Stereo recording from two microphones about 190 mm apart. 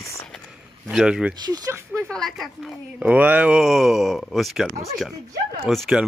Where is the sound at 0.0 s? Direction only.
15° left (ahead or behind).